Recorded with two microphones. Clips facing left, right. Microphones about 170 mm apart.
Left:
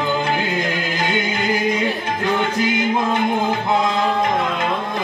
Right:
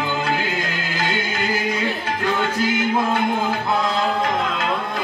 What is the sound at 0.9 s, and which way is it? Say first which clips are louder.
Music: even; 20° left (ahead or behind).